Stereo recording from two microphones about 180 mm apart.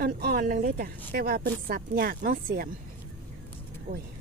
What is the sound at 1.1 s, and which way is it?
Speech, 55° right (ahead or behind).